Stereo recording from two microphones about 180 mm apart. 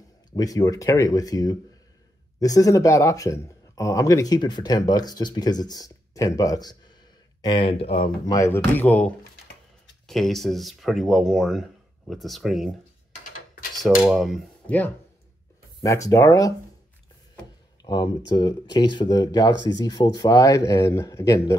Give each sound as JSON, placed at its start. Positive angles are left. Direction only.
{"t": 0.3, "sound": "speech", "side_deg": 20}
{"t": 8.3, "sound": "speech", "side_deg": 15}
{"t": 13.7, "sound": "speech", "side_deg": 0}
{"t": 15.8, "sound": "speech", "side_deg": 20}
{"t": 17.8, "sound": "speech", "side_deg": 20}